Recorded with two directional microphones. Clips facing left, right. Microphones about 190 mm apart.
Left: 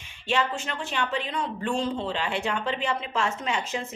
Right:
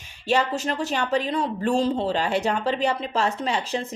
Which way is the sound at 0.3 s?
40° right (ahead or behind).